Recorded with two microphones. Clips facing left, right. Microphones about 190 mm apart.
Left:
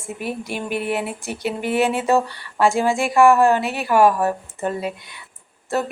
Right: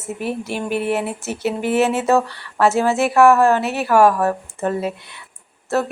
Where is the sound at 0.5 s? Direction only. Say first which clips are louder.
Right 3 dB; 35° right (ahead or behind).